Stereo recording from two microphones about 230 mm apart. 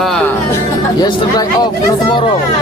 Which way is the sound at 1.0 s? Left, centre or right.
Centre.